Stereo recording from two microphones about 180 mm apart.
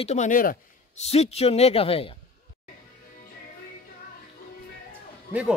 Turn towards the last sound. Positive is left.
turn(degrees=-5)  # may be behind; listen again after turning